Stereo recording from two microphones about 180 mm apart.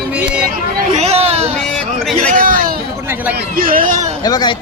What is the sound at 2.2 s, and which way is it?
A man's voice, 45° right (ahead or behind).